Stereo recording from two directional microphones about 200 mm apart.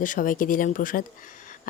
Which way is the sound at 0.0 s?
40° left (ahead or behind).